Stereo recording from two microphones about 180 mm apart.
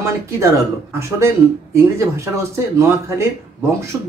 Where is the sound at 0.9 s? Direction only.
15° right (ahead or behind).